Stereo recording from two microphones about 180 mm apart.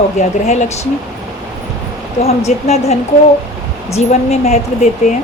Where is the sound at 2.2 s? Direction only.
35° left (ahead or behind).